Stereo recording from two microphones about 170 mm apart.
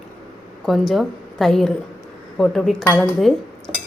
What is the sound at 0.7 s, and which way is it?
Cutlery, centre (ahead or behind).